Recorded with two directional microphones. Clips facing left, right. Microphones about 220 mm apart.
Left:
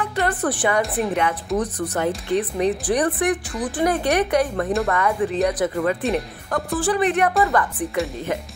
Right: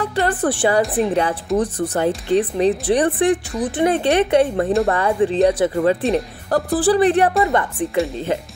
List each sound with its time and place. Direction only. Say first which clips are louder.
0.0 s a woman's voice: right 3 dB; 30° right (ahead or behind)